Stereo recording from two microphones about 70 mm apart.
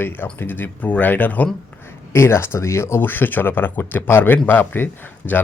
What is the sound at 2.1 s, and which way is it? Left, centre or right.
Speech, left.